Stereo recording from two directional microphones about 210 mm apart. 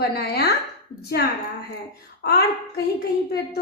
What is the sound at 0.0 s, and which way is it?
Speech, 50° left (ahead or behind).